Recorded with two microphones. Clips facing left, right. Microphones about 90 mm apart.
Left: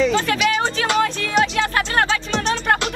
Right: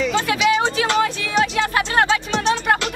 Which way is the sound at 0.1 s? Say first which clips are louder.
Right 1 dB; 20° right (ahead or behind).